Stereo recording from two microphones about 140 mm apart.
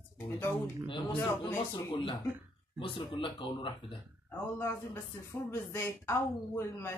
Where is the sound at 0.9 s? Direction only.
35° left (ahead or behind).